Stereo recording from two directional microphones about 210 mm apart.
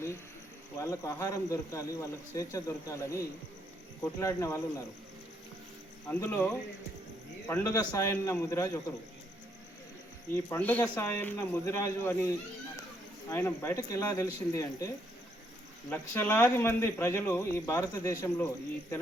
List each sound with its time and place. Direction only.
0.8 s speech: 15° left (ahead or behind)
6.1 s speech: 10° left (ahead or behind)
10.3 s speech: 10° left (ahead or behind)
15.9 s speech: 10° left (ahead or behind)